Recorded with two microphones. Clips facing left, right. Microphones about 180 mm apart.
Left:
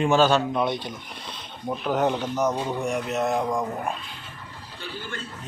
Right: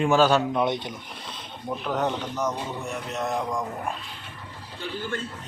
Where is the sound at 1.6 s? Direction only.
5° left (ahead or behind).